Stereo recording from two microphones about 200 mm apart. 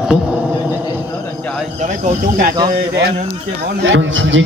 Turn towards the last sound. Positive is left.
turn(degrees=-70)  # may be behind; listen again after turning